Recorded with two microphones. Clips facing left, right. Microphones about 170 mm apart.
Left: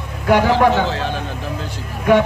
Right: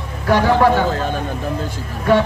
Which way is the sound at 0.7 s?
45° right (ahead or behind).